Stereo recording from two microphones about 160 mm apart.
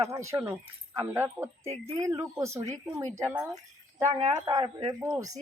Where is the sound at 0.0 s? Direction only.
20° right (ahead or behind).